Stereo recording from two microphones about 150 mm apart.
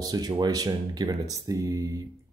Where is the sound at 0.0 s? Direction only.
25° right (ahead or behind).